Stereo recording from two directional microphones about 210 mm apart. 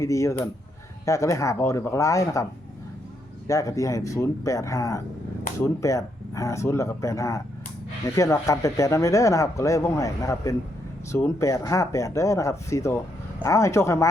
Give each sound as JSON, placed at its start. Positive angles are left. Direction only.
{"t": 0.0, "sound": "speech", "side_deg": 15}